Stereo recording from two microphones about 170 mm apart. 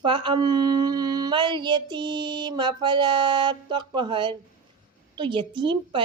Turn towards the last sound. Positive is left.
turn(degrees=-30)  # may be behind; listen again after turning